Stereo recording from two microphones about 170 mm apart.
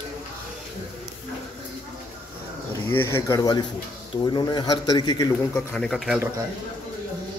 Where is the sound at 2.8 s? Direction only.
15° left (ahead or behind).